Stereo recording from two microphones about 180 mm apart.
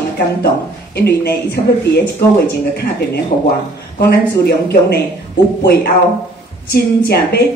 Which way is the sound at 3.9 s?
60° left (ahead or behind).